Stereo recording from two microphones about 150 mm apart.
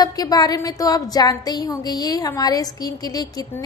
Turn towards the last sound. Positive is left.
turn(degrees=25)  # may be behind; listen again after turning